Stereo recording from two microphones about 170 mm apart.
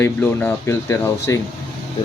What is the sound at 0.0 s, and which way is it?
Speech, 15° left (ahead or behind).